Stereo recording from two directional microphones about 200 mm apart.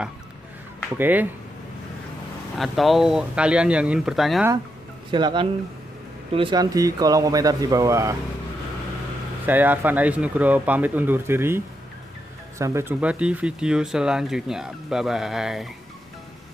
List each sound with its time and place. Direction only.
0.9 s speech: 10° right (ahead or behind)
2.5 s speech: centre (ahead or behind)
5.1 s speech: 25° right (ahead or behind)
9.5 s speech: 10° right (ahead or behind)